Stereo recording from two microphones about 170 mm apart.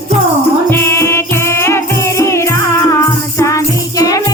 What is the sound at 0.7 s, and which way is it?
Music, 15° left (ahead or behind).